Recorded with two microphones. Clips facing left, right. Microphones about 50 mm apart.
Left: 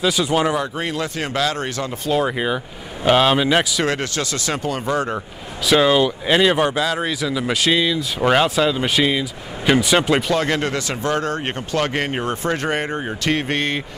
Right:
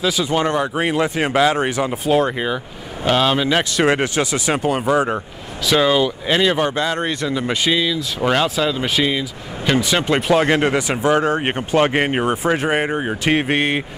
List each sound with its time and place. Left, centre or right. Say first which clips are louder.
0.0 s speech: even; centre
0.7 s speech: right 5 dB; right
2.2 s speech: even; centre
3.8 s speech: right 5 dB; centre
5.7 s speech: left 1 dB; centre
7.2 s speech: left 1 dB; centre
7.7 s speech: left 1 dB; centre
10.0 s speech: even; centre
10.3 s speech: right 4 dB; right